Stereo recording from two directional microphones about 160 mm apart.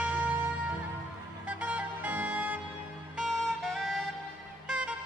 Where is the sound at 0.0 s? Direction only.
10° right (ahead or behind).